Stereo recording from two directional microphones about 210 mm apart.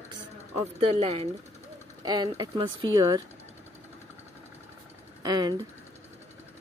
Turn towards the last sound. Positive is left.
turn(degrees=-20)  # may be behind; listen again after turning